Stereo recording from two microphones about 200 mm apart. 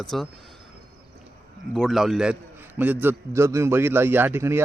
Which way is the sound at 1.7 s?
Centre (ahead or behind).